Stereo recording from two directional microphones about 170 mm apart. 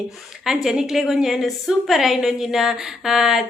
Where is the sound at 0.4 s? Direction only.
5° right (ahead or behind).